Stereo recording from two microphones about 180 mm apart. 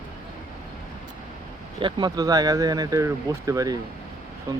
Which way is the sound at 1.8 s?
25° right (ahead or behind).